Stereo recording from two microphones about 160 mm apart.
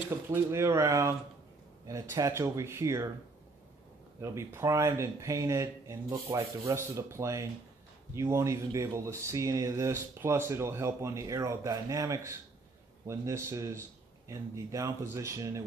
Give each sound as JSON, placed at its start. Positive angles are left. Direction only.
{"t": 0.3, "sound": "speech", "side_deg": -15}
{"t": 4.2, "sound": "speech", "side_deg": -15}